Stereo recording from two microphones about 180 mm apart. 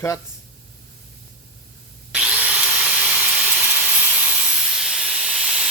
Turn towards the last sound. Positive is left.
turn(degrees=-5)  # may be behind; listen again after turning